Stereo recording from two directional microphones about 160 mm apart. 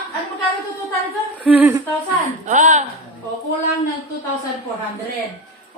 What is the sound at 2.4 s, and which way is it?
Speech, 50° right (ahead or behind).